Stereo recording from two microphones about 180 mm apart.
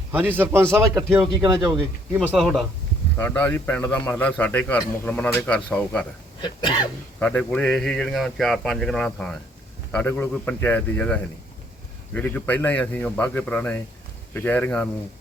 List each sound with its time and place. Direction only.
0.1 s speech: 10° right (ahead or behind)
2.3 s speech: centre (ahead or behind)
3.2 s a man's voice: 10° left (ahead or behind)
6.4 s speech: 25° left (ahead or behind)
7.2 s a man's voice: 10° left (ahead or behind)